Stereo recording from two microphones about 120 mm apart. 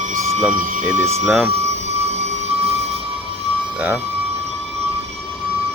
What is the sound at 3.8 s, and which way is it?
Speech, 15° right (ahead or behind).